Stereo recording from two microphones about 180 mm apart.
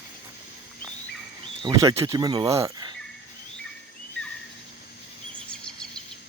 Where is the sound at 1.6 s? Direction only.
20° right (ahead or behind).